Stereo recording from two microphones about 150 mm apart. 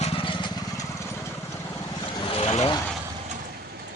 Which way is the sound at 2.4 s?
45° left (ahead or behind).